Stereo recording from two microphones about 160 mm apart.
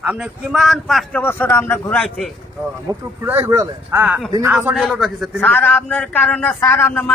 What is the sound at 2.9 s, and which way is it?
Speech, 20° right (ahead or behind).